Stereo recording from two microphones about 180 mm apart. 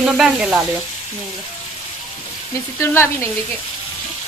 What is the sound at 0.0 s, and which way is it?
Speech, 5° right (ahead or behind).